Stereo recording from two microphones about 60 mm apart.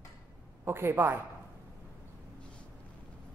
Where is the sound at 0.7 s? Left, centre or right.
Right.